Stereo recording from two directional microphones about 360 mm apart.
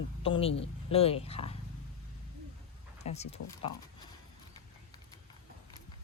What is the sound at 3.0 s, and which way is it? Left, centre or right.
Speech, centre.